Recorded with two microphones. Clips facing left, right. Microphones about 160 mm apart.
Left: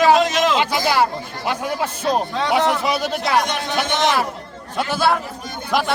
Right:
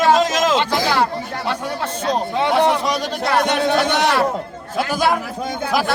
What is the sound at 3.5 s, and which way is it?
Speech, 65° right (ahead or behind).